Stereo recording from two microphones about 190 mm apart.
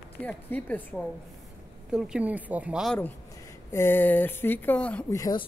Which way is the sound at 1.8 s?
5° right (ahead or behind).